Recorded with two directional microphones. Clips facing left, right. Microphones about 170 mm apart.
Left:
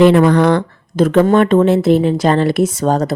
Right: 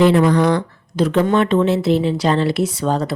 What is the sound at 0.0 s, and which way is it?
Speech, 60° left (ahead or behind).